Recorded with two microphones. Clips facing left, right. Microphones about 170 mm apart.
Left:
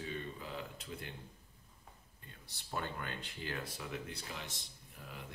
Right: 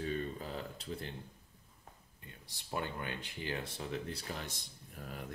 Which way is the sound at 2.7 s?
20° right (ahead or behind).